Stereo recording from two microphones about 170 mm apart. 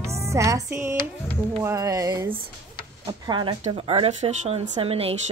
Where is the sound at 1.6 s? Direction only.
20° right (ahead or behind).